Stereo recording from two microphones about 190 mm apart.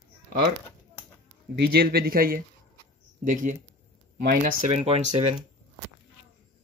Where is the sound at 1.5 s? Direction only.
60° right (ahead or behind).